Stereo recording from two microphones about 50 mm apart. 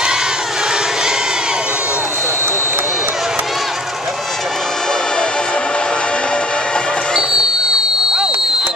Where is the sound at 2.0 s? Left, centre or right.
Right.